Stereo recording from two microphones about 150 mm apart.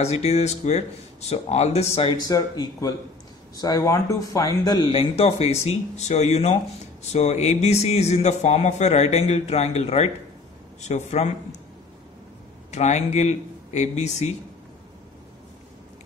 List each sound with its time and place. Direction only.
0.0 s a man's voice: 45° left (ahead or behind)
2.2 s speech: 25° left (ahead or behind)
4.9 s a man's voice: 40° left (ahead or behind)
12.7 s a man's voice: 50° left (ahead or behind)